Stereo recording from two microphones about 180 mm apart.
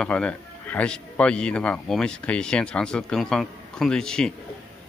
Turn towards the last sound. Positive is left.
turn(degrees=5)  # may be behind; listen again after turning